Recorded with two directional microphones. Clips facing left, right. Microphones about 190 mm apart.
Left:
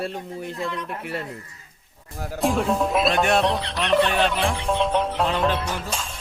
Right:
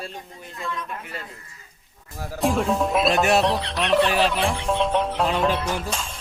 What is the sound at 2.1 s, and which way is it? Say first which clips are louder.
Speech: even; centre (ahead or behind).